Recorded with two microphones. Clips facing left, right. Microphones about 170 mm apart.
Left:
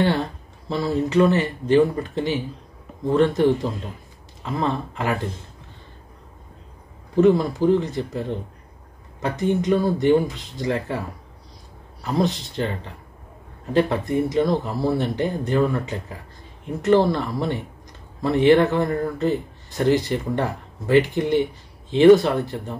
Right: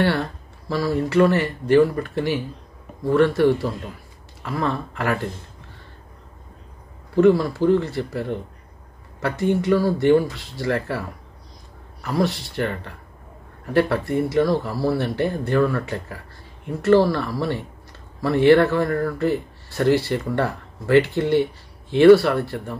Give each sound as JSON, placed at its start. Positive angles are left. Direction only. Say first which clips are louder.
{"t": 0.0, "sound": "speech", "louder": "even", "side_deg": 20}
{"t": 7.2, "sound": "speech", "louder": "right 1 dB", "side_deg": 20}